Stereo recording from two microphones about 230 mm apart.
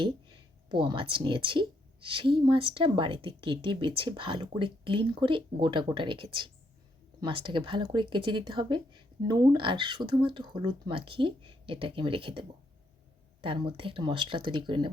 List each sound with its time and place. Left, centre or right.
0.7 s speech: right